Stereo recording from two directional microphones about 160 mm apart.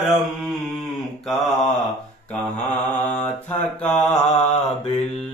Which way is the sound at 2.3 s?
10° left (ahead or behind).